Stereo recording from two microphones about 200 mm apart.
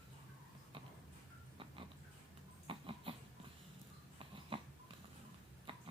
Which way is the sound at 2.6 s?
25° right (ahead or behind).